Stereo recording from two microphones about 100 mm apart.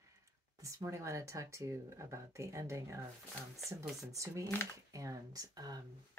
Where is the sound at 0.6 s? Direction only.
30° right (ahead or behind).